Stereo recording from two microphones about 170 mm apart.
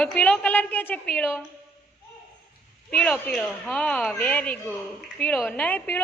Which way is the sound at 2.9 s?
5° left (ahead or behind).